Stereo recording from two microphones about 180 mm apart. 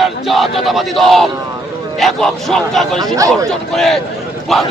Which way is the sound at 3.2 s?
20° right (ahead or behind).